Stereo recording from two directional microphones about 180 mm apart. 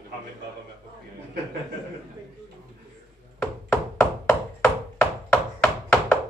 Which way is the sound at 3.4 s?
10° left (ahead or behind).